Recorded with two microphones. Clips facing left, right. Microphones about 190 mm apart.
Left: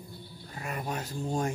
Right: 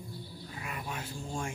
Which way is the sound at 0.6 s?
45° left (ahead or behind).